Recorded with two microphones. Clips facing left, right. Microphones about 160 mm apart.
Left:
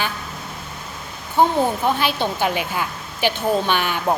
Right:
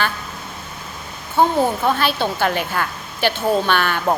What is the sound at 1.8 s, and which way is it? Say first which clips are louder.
A woman's voice: right 1 dB; 15° left (ahead or behind).